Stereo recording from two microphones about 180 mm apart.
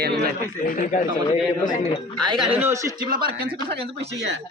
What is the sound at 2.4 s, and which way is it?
Speech, 5° right (ahead or behind).